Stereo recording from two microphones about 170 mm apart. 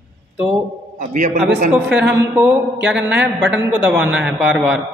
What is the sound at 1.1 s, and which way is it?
Speech, 50° right (ahead or behind).